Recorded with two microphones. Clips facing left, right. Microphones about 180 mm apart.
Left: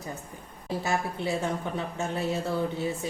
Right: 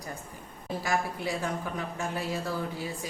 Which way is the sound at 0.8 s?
25° left (ahead or behind).